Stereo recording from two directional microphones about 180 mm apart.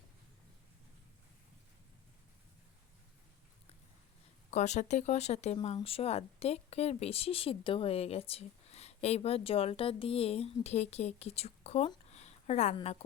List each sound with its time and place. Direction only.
4.5 s a woman's voice: 40° left (ahead or behind)
12.1 s a sound: 40° left (ahead or behind)
12.7 s a woman's voice: 35° left (ahead or behind)